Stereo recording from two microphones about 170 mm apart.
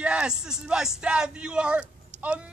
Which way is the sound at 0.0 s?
5° right (ahead or behind).